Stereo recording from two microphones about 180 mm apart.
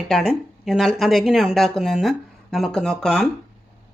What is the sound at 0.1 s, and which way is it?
Speech, centre (ahead or behind).